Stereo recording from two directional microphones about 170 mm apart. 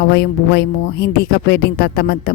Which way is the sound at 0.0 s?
65° left (ahead or behind).